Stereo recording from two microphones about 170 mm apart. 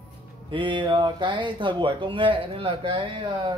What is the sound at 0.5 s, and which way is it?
Speech, 30° right (ahead or behind).